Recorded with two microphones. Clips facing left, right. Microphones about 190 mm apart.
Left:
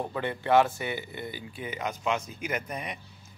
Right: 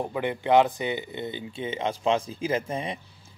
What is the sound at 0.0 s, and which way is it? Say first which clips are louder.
Speech: right 3 dB; 15° right (ahead or behind).